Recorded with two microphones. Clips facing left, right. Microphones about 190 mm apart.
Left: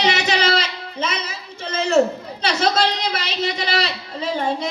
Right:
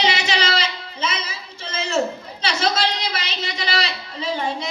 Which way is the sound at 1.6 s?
60° left (ahead or behind).